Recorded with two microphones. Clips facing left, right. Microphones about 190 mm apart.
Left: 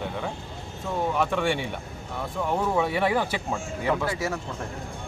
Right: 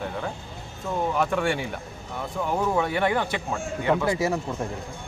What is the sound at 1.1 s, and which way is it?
Speech, centre (ahead or behind).